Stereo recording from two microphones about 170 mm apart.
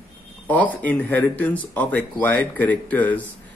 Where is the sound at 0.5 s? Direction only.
10° left (ahead or behind).